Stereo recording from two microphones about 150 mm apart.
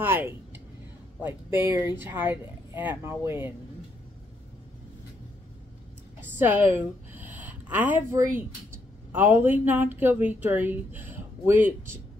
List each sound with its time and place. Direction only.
0.0 s speech: 15° right (ahead or behind)
6.3 s speech: 15° right (ahead or behind)
7.2 s a sound: 10° right (ahead or behind)
9.1 s speech: 15° right (ahead or behind)